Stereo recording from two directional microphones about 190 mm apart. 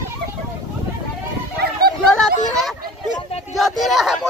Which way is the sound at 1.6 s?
55° right (ahead or behind).